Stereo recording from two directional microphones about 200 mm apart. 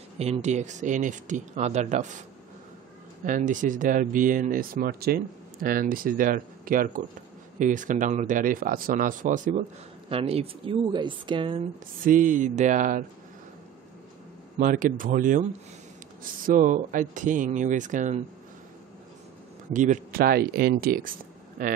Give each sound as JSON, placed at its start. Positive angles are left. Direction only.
{"t": 0.2, "sound": "speech", "side_deg": -35}
{"t": 3.3, "sound": "speech", "side_deg": -40}
{"t": 10.0, "sound": "speech", "side_deg": -30}
{"t": 12.0, "sound": "speech", "side_deg": -40}
{"t": 14.6, "sound": "speech", "side_deg": -40}
{"t": 16.4, "sound": "speech", "side_deg": -40}
{"t": 19.7, "sound": "speech", "side_deg": -40}